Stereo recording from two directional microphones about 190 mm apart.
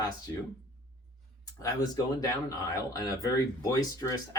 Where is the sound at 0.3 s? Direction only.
15° left (ahead or behind).